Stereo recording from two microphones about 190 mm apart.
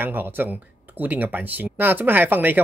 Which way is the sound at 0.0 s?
10° right (ahead or behind).